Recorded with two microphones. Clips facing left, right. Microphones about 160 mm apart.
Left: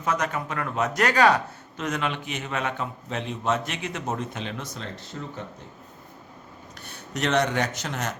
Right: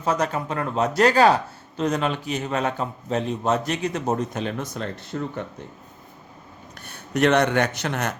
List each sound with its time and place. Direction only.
0.0 s speech: 30° right (ahead or behind); by 5.3 s 55° right (ahead or behind)
6.7 s speech: 55° right (ahead or behind)